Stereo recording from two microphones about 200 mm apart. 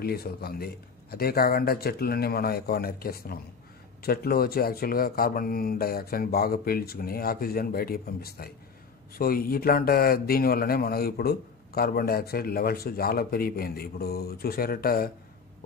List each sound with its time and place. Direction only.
0.0 s speech: 50° left (ahead or behind)